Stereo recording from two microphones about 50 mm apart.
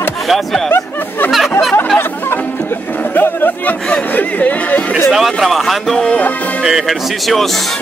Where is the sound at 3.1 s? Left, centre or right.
Left.